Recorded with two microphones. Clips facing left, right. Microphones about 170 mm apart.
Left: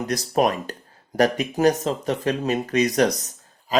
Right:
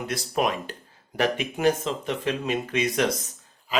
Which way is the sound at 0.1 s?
40° left (ahead or behind).